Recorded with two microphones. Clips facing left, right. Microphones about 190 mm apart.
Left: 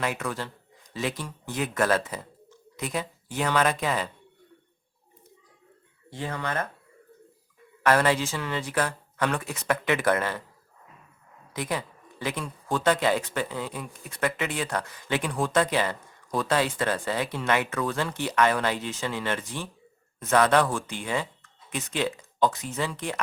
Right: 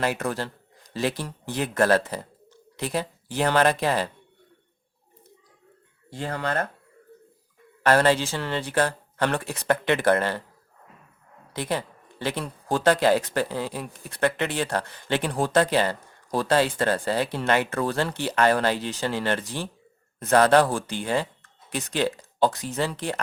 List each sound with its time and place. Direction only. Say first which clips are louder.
0.0 s speech: right 4 dB; 35° right (ahead or behind)
7.9 s speech: right 3 dB; 30° right (ahead or behind)
11.5 s speech: right 2 dB; 30° right (ahead or behind)